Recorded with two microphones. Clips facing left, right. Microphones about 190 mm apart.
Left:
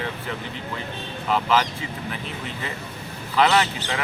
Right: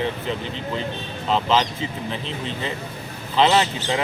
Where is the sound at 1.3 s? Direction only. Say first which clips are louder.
Right 1 dB; 25° right (ahead or behind).